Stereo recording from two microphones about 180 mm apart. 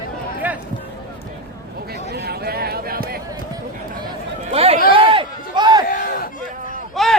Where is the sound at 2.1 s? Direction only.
60° right (ahead or behind).